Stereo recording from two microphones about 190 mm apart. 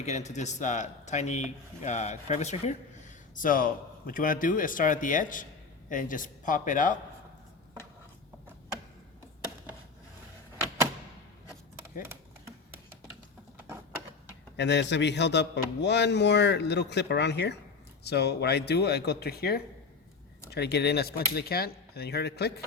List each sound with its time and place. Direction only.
0.0 s a man's voice: 35° left (ahead or behind)
14.5 s a man's voice: 65° left (ahead or behind)